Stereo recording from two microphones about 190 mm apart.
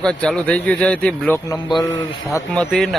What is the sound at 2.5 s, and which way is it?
Speech, centre (ahead or behind).